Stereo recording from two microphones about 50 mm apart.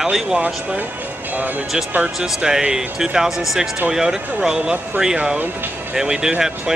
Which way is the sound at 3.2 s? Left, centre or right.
Centre.